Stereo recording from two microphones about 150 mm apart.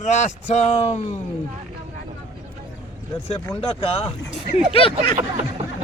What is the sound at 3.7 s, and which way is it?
A man's voice, 40° left (ahead or behind).